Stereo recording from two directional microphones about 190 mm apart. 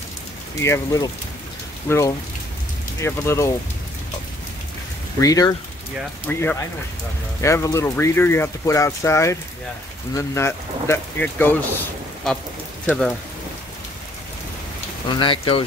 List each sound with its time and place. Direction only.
0.6 s speech: 15° left (ahead or behind)
5.2 s speech: 20° left (ahead or behind); by 13.1 s centre (ahead or behind)
15.1 s speech: 25° left (ahead or behind)